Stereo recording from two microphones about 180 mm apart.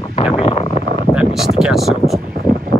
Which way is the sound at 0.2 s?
30° left (ahead or behind).